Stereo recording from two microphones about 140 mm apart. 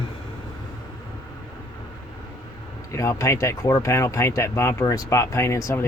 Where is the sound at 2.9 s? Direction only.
20° left (ahead or behind).